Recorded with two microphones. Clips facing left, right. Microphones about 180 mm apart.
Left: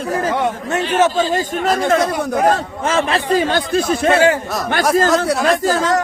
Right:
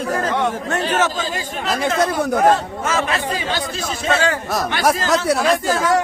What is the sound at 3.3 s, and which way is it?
Speech, 50° left (ahead or behind).